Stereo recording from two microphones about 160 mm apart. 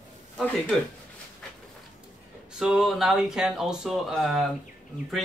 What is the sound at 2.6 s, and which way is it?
Speech, 5° right (ahead or behind).